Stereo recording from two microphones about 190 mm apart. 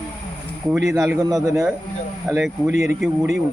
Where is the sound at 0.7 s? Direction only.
15° right (ahead or behind).